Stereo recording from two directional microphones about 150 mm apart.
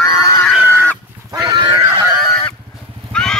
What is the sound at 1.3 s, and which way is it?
Pig, 25° right (ahead or behind).